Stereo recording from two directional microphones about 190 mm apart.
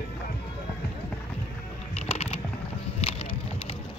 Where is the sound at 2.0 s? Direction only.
35° left (ahead or behind).